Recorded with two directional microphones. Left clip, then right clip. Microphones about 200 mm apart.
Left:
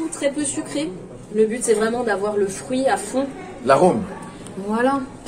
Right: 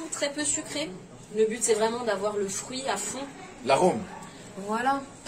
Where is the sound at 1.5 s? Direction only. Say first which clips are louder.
Left 6 dB; 15° right (ahead or behind).